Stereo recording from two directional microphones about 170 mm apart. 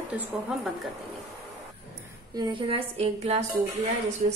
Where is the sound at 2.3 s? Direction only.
25° right (ahead or behind).